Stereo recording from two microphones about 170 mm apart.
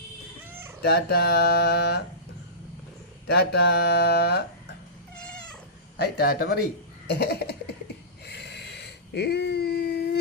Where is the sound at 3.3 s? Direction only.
75° left (ahead or behind).